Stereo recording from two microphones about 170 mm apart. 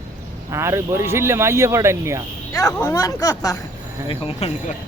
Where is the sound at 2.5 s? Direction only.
20° left (ahead or behind).